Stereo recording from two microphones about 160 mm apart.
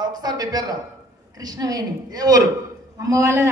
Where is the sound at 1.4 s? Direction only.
25° right (ahead or behind).